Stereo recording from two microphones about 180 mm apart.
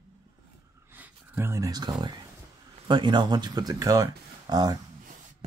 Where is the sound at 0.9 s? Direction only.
10° right (ahead or behind).